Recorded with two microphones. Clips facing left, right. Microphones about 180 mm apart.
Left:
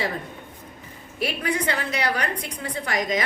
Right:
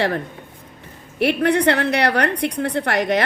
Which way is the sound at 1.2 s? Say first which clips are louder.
Right 9 dB; 65° right (ahead or behind).